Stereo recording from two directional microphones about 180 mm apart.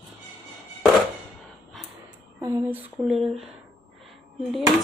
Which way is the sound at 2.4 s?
15° right (ahead or behind).